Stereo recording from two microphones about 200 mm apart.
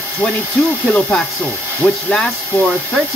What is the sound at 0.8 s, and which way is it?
Speech, centre (ahead or behind).